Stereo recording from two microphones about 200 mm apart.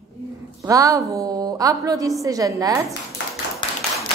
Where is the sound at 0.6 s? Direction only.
15° right (ahead or behind).